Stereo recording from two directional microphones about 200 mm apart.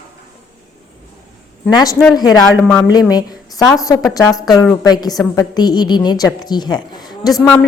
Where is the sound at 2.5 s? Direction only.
5° left (ahead or behind).